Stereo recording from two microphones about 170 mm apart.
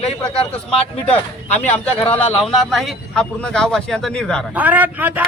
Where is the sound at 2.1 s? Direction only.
5° left (ahead or behind).